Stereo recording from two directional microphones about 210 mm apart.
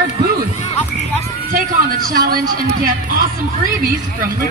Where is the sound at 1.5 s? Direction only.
40° right (ahead or behind).